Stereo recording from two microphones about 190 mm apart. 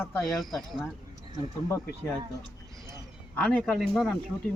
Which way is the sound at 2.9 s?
5° left (ahead or behind).